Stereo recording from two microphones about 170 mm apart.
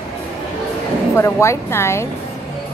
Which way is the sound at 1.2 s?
15° left (ahead or behind).